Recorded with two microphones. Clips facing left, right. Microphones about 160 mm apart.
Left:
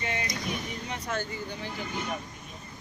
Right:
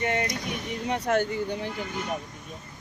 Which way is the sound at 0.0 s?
60° right (ahead or behind).